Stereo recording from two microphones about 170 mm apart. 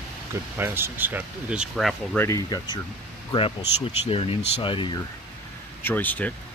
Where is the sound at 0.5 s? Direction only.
15° right (ahead or behind).